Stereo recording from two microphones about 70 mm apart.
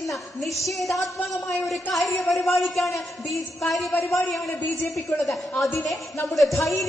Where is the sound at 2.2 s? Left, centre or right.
Centre.